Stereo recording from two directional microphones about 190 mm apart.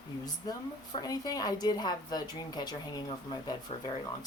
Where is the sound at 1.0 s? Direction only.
20° left (ahead or behind).